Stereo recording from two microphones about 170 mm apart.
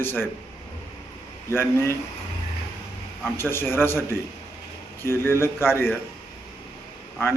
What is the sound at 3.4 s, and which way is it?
Speech, 15° left (ahead or behind).